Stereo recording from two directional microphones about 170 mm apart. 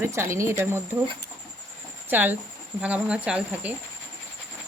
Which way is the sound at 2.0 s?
10° right (ahead or behind).